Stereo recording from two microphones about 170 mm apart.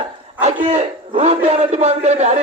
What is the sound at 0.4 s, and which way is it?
A man's voice, 40° right (ahead or behind).